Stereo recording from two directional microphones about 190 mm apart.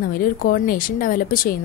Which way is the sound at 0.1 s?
50° left (ahead or behind).